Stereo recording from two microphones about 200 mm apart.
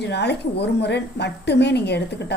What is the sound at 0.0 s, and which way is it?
A woman's voice, 60° left (ahead or behind).